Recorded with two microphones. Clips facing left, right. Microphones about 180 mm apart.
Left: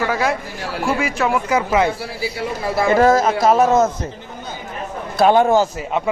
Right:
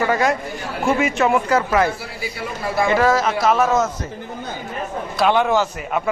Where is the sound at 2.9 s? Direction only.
45° left (ahead or behind).